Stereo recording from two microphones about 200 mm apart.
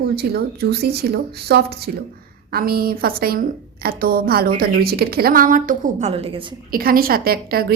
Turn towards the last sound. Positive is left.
turn(degrees=-50)  # may be behind; listen again after turning